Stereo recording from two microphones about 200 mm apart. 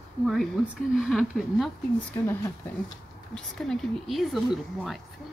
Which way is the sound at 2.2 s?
15° left (ahead or behind).